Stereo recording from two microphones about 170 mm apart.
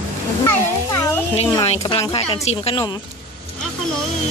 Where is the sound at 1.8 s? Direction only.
25° left (ahead or behind).